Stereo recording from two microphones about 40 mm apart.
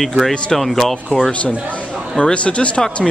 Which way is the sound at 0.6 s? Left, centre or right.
Centre.